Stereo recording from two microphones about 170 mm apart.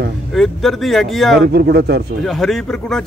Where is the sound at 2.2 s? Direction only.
Centre (ahead or behind).